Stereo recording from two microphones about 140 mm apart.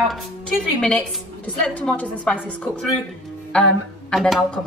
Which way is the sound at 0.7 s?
5° left (ahead or behind).